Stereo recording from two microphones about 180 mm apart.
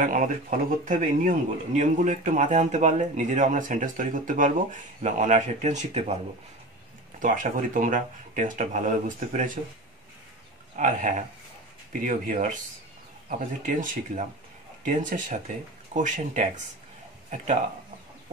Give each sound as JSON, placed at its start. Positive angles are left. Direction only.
{"t": 0.0, "sound": "speech", "side_deg": -45}
{"t": 7.2, "sound": "speech", "side_deg": -45}
{"t": 10.8, "sound": "speech", "side_deg": -45}